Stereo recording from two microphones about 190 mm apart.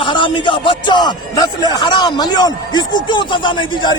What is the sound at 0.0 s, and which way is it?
A man's voice, 25° left (ahead or behind).